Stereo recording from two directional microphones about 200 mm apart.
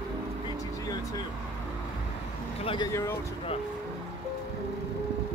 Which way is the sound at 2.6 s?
20° left (ahead or behind).